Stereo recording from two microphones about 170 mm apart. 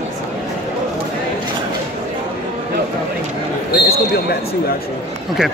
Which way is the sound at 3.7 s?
65° left (ahead or behind).